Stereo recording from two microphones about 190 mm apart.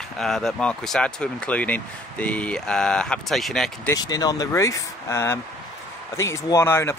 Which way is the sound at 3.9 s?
20° left (ahead or behind).